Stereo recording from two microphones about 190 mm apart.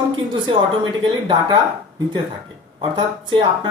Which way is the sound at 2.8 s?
25° right (ahead or behind).